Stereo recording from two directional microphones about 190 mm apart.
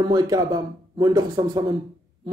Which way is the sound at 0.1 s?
20° right (ahead or behind).